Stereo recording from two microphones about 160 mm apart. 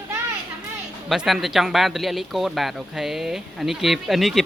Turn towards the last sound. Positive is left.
turn(degrees=0)  # may be behind; listen again after turning